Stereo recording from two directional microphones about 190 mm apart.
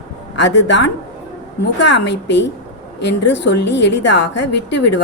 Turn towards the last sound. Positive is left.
turn(degrees=65)  # may be behind; listen again after turning